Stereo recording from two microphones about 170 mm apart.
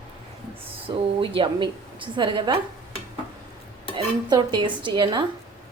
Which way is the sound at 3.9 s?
25° right (ahead or behind).